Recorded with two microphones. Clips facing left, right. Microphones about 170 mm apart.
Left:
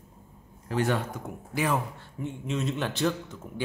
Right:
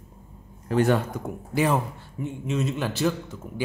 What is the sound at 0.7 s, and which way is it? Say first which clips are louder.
Speech: right 6 dB; 45° right (ahead or behind).